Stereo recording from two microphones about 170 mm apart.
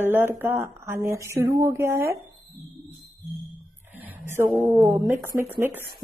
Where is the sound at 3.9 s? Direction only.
10° right (ahead or behind).